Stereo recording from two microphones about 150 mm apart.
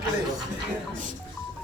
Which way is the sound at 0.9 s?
60° right (ahead or behind).